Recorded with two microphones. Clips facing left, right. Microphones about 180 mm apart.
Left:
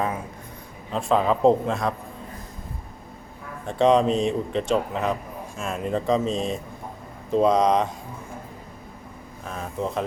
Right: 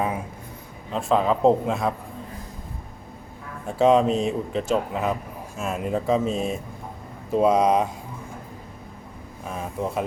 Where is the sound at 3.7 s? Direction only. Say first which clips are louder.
Right 1 dB; 5° right (ahead or behind).